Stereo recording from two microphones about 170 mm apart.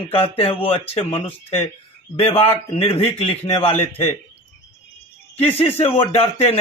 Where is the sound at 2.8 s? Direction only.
35° left (ahead or behind).